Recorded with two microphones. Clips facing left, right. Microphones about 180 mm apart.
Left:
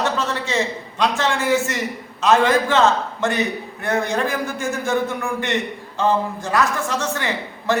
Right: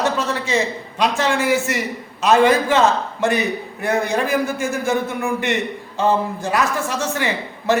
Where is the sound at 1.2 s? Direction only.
15° right (ahead or behind).